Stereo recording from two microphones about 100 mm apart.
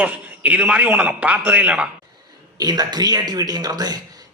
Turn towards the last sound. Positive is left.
turn(degrees=-40)  # may be behind; listen again after turning